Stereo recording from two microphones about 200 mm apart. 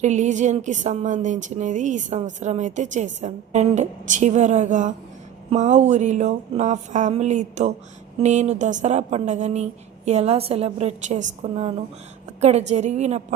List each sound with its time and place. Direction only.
0.0 s a woman's voice: 35° right (ahead or behind)